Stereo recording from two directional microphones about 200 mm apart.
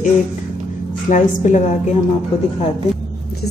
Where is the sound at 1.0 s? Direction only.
40° left (ahead or behind).